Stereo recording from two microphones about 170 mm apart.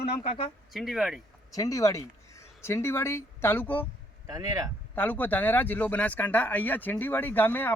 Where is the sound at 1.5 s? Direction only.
20° left (ahead or behind).